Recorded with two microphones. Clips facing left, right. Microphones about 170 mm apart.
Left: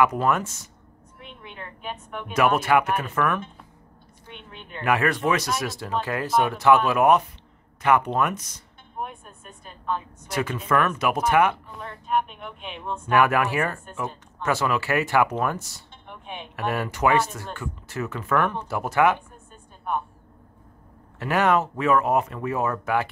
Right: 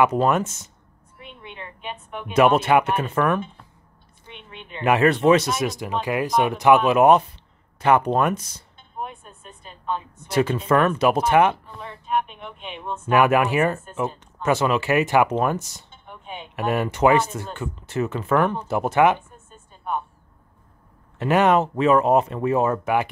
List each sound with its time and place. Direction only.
0.0 s speech: 25° right (ahead or behind)
1.1 s a woman's voice: centre (ahead or behind)
2.2 s speech: 25° right (ahead or behind)
4.7 s speech: 20° right (ahead or behind)
9.0 s a sound: centre (ahead or behind)
10.2 s speech: 30° right (ahead or behind)
11.7 s speech: centre (ahead or behind)
13.1 s speech: 20° right (ahead or behind)
16.1 s music: centre (ahead or behind)
16.5 s speech: 20° right (ahead or behind)
19.1 s a sound: centre (ahead or behind)
21.2 s speech: 20° right (ahead or behind)